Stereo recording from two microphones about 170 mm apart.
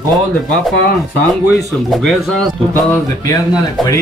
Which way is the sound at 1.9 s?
Centre (ahead or behind).